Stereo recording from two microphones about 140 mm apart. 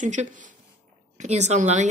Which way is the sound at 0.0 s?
60° right (ahead or behind).